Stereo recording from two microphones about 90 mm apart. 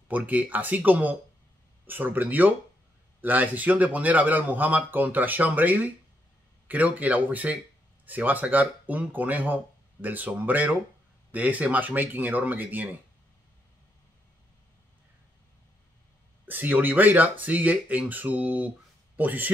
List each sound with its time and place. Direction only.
0.1 s speech: 15° right (ahead or behind)
16.4 s speech: 20° right (ahead or behind)